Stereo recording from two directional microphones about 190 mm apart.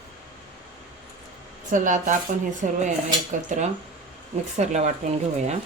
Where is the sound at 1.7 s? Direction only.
40° right (ahead or behind).